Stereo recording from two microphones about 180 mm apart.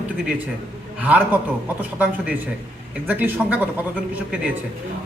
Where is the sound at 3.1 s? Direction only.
10° right (ahead or behind).